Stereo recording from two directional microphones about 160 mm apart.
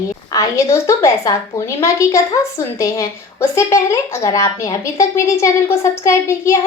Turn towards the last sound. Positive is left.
turn(degrees=20)  # may be behind; listen again after turning